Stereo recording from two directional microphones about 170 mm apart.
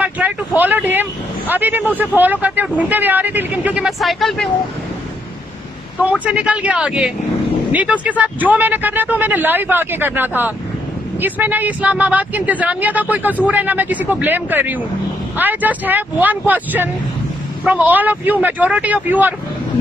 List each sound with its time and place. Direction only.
0.6 s a sound: 10° right (ahead or behind)
1.5 s speech: 10° right (ahead or behind)
6.2 s speech: 5° right (ahead or behind)